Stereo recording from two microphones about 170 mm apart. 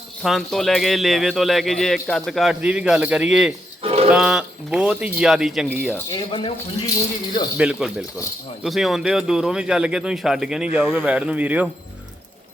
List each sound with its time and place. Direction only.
0.2 s speech: centre (ahead or behind)
3.8 s a sound: 35° right (ahead or behind)
4.1 s speech: 5° right (ahead or behind)
6.1 s speech: 25° left (ahead or behind)
7.5 s speech: 5° right (ahead or behind)